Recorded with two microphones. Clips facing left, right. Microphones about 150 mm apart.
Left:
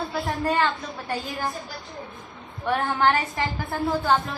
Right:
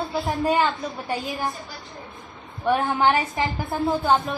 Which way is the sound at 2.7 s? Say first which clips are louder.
Right 2 dB; 20° right (ahead or behind).